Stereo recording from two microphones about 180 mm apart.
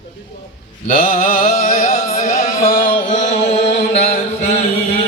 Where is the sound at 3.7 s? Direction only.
40° left (ahead or behind).